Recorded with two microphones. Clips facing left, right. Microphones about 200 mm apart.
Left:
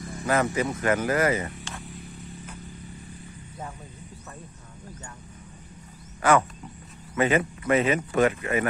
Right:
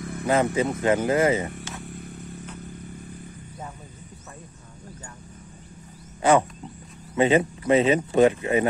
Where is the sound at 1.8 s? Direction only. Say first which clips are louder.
Right 3 dB; 55° right (ahead or behind).